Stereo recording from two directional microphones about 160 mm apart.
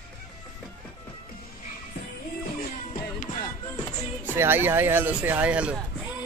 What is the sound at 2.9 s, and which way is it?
Music, 55° left (ahead or behind).